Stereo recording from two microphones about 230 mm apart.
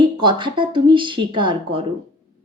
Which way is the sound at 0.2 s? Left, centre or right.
Right.